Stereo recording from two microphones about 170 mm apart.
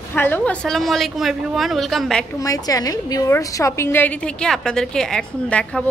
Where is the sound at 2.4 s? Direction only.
20° left (ahead or behind).